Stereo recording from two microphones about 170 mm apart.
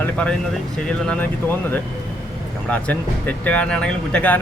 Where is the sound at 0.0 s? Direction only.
5° left (ahead or behind).